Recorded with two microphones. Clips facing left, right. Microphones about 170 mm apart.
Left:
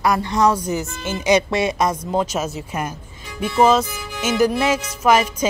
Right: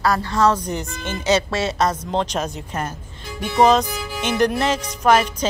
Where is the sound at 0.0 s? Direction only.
15° left (ahead or behind).